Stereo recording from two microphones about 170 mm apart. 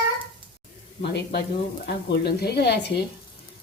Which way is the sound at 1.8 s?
70° left (ahead or behind).